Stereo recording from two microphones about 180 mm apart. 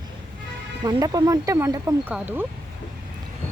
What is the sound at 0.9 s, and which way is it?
Speech, 20° right (ahead or behind).